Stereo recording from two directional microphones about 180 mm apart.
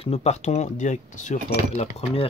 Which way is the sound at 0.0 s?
35° left (ahead or behind).